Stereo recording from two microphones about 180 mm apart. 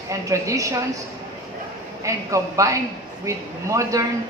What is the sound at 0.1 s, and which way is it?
Speech, 15° right (ahead or behind).